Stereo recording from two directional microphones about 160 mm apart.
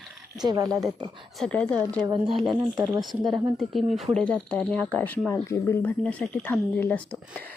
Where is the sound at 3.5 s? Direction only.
Centre (ahead or behind).